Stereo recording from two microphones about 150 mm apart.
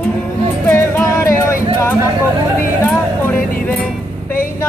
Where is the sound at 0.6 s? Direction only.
15° left (ahead or behind).